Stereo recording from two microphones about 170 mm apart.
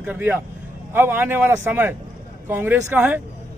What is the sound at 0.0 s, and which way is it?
Speech, 10° right (ahead or behind).